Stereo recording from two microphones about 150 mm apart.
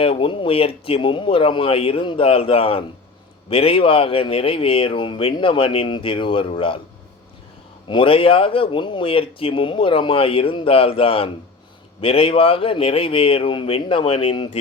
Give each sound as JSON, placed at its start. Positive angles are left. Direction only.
{"t": 0.0, "sound": "speech", "side_deg": 35}
{"t": 7.9, "sound": "speech", "side_deg": 35}